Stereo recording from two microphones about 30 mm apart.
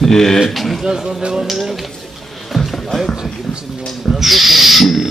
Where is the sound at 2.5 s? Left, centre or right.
Centre.